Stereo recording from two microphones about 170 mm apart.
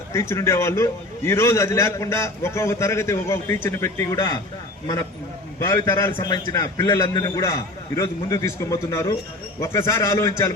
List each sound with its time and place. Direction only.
0.1 s a man's voice: 15° left (ahead or behind)
5.5 s a man's voice: 20° left (ahead or behind)